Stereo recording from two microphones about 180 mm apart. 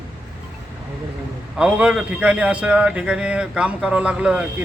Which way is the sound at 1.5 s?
5° right (ahead or behind).